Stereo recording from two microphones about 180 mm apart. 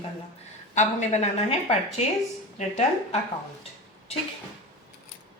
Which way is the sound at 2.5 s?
40° left (ahead or behind).